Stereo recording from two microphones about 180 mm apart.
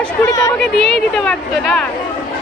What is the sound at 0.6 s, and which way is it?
A woman's voice, centre (ahead or behind).